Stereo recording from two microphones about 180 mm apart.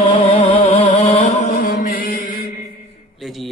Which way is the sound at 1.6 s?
55° left (ahead or behind).